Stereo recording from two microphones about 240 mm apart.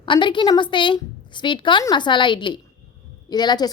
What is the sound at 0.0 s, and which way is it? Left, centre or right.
A woman's voice, centre.